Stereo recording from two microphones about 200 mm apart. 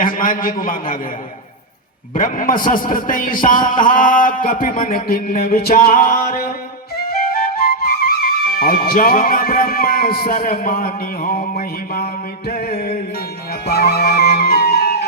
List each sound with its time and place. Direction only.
0.0 s a man's voice: 45° left (ahead or behind)
2.1 s a man's voice: 40° left (ahead or behind)
7.6 s music: 50° left (ahead or behind)